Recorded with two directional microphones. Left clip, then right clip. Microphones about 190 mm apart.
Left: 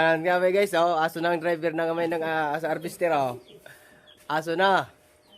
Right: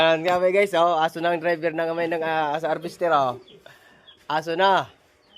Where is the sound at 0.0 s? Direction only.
5° left (ahead or behind).